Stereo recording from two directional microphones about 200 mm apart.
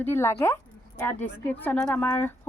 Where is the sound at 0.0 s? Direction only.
10° left (ahead or behind).